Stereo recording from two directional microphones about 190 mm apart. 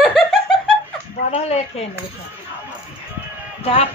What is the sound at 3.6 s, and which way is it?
Speech, 30° left (ahead or behind).